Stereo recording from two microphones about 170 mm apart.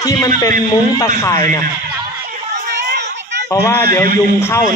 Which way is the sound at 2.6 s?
80° right.